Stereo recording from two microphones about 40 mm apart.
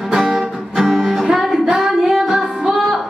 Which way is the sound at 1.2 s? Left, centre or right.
Centre.